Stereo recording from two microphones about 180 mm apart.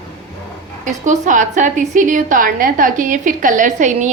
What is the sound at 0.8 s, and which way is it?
A woman's voice, 45° right (ahead or behind).